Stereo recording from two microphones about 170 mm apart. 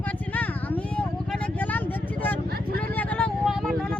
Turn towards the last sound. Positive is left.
turn(degrees=0)  # may be behind; listen again after turning